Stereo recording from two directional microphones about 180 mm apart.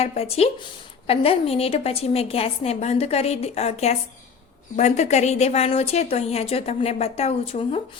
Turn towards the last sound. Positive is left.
turn(degrees=35)  # may be behind; listen again after turning